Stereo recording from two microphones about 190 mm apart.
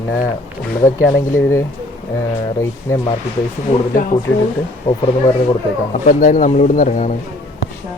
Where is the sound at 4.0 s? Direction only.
45° left (ahead or behind).